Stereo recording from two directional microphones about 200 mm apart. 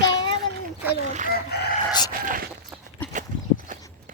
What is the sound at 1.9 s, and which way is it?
Chicken, 20° left (ahead or behind).